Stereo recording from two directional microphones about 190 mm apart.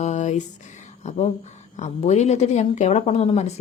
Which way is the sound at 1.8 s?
35° left (ahead or behind).